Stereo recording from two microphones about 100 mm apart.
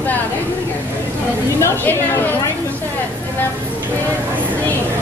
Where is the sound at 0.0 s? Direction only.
15° left (ahead or behind).